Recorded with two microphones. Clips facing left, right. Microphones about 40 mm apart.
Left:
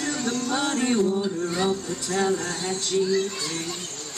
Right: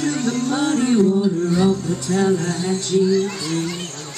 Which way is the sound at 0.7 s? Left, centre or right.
Centre.